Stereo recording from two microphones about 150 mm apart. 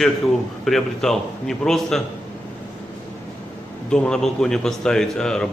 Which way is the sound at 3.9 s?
5° left (ahead or behind).